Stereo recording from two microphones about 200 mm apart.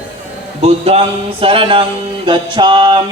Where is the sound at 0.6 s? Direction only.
30° right (ahead or behind).